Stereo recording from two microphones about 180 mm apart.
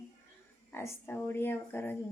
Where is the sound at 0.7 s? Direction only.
10° left (ahead or behind).